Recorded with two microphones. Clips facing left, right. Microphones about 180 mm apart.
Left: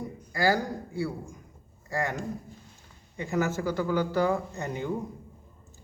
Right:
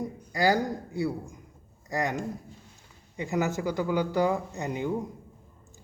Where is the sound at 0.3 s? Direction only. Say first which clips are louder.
Right 1 dB; 20° right (ahead or behind).